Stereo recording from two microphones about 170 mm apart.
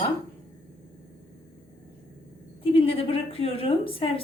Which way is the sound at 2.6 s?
30° left (ahead or behind).